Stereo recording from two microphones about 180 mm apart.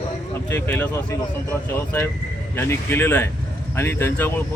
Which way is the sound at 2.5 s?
15° left (ahead or behind).